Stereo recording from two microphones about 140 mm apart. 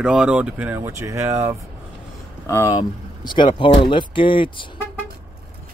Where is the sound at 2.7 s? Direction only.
35° left (ahead or behind).